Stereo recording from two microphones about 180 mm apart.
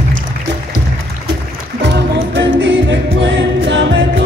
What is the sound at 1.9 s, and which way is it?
Music, 75° right (ahead or behind).